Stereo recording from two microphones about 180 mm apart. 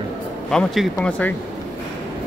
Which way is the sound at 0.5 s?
Centre (ahead or behind).